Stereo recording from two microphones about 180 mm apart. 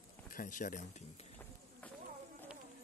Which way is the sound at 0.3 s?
50° left (ahead or behind).